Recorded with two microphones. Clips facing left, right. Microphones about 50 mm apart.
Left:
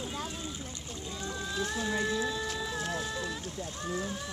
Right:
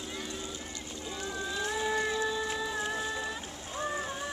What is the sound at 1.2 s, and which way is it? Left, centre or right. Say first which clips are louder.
Music: even; centre.